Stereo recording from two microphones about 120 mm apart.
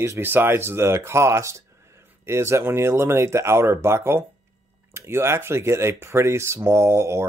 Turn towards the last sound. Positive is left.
turn(degrees=-25)  # may be behind; listen again after turning